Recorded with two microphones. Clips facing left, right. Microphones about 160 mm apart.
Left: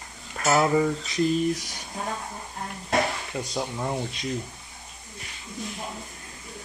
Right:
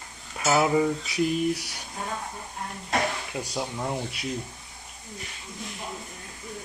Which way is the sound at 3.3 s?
10° right (ahead or behind).